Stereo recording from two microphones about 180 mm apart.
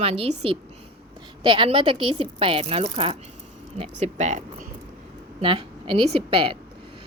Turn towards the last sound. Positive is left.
turn(degrees=-30)  # may be behind; listen again after turning